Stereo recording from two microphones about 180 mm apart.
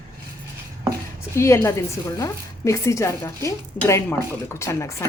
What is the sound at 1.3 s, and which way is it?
A woman's voice, 15° left (ahead or behind).